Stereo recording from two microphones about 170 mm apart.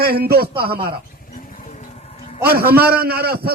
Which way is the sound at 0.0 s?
65° right (ahead or behind).